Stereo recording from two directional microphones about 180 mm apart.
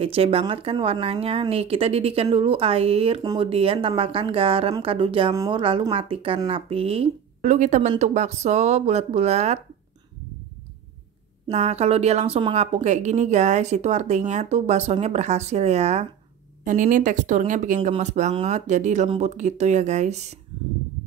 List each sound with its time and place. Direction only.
0.0 s a woman's voice: 30° right (ahead or behind)
5.3 s speech: 20° right (ahead or behind)
5.6 s a woman's voice: 30° right (ahead or behind)
11.4 s a woman's voice: 35° right (ahead or behind)
16.6 s a woman's voice: 50° right (ahead or behind)